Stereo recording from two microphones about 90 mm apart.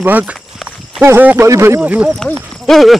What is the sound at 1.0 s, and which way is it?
Speech, 30° right (ahead or behind).